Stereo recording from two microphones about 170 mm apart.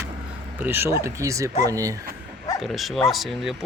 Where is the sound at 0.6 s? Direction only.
10° right (ahead or behind).